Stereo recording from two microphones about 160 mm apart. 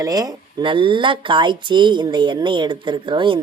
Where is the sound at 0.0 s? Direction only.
25° right (ahead or behind).